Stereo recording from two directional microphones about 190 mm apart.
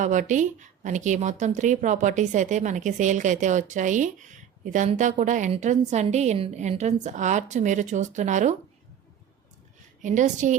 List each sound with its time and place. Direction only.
0.0 s a woman's voice: 40° right (ahead or behind)
10.0 s a woman's voice: 40° right (ahead or behind)